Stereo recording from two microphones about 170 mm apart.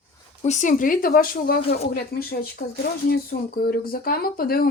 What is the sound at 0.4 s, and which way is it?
Speech, 45° left (ahead or behind).